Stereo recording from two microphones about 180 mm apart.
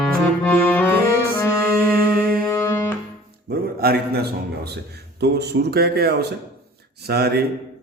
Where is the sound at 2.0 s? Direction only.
20° left (ahead or behind).